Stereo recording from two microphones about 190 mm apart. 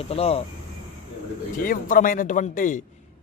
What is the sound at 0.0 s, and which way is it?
Speech, 30° left (ahead or behind).